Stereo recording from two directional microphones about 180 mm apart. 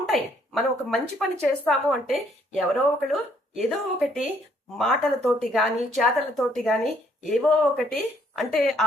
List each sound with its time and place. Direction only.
0.0 s speech: centre (ahead or behind)